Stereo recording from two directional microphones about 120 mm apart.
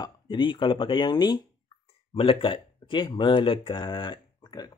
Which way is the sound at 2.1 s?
50° left (ahead or behind).